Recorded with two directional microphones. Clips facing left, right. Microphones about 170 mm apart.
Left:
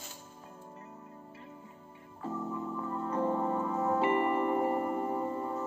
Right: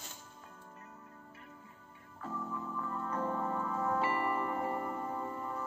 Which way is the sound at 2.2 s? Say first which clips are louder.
Left 5 dB; 20° left (ahead or behind).